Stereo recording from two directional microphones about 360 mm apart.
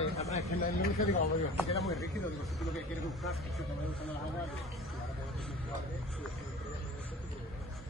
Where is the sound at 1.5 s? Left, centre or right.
Centre.